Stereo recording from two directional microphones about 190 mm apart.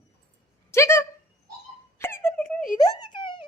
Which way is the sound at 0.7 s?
15° left (ahead or behind).